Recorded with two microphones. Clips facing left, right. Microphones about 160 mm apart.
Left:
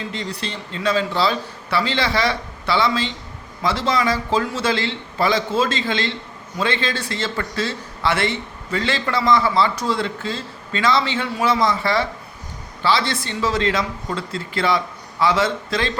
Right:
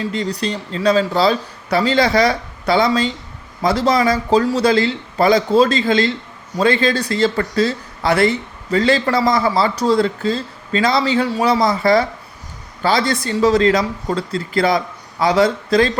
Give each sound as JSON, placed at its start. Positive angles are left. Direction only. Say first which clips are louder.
{"t": 0.1, "sound": "a man's voice", "louder": "right 7 dB", "side_deg": -40}